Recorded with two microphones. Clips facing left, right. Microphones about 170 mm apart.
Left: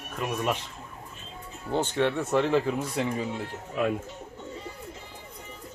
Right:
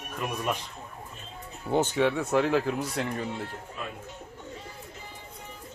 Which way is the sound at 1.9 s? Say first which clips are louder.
Even; 5° right (ahead or behind).